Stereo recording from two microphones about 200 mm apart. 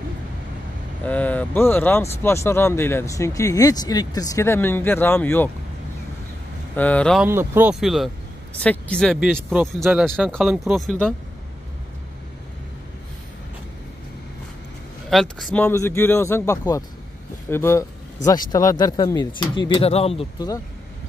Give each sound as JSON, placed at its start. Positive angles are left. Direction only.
{"t": 1.0, "sound": "speech", "side_deg": 10}
{"t": 6.7, "sound": "speech", "side_deg": 10}
{"t": 7.2, "sound": "speech", "side_deg": -10}
{"t": 7.8, "sound": "speech", "side_deg": 0}
{"t": 15.0, "sound": "speech", "side_deg": 0}
{"t": 15.6, "sound": "speech", "side_deg": 10}